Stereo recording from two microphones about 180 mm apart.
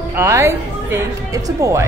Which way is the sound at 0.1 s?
15° right (ahead or behind).